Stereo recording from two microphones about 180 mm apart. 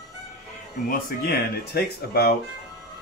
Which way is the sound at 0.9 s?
60° left (ahead or behind).